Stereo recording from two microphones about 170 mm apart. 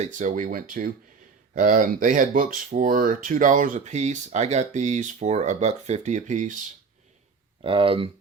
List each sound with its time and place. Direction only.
0.0 s speech: 50° right (ahead or behind)
7.6 s speech: 30° right (ahead or behind)